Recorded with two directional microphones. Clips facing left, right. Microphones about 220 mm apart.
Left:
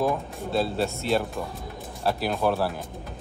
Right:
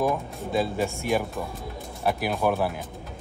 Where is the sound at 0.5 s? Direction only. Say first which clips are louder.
Even; 15° right (ahead or behind).